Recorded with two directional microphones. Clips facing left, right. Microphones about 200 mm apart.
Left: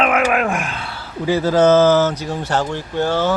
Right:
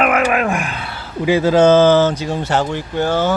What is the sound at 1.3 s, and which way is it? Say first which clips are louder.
Speech: right 2 dB; 15° right (ahead or behind).